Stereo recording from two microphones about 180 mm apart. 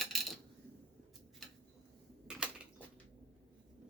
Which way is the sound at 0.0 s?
Centre (ahead or behind).